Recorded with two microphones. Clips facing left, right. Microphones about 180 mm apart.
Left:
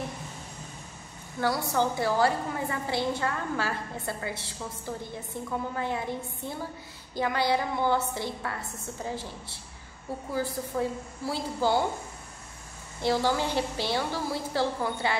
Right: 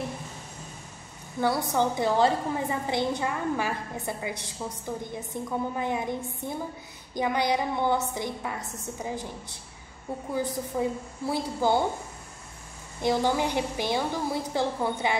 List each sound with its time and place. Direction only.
1.7 s a woman's voice: 20° right (ahead or behind)
13.0 s a woman's voice: 15° right (ahead or behind)